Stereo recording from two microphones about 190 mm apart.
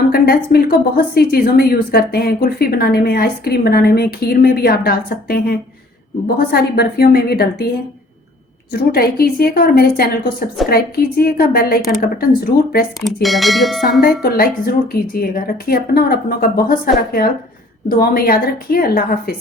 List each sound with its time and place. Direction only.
0.1 s a woman's voice: 55° left (ahead or behind)
8.7 s speech: 55° left (ahead or behind)
13.2 s speech: centre (ahead or behind)
14.0 s speech: 55° left (ahead or behind)